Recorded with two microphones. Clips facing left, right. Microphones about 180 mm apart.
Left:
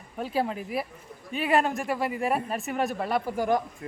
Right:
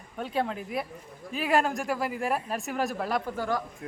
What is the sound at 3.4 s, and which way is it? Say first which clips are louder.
Speech: left 5 dB; 20° left (ahead or behind).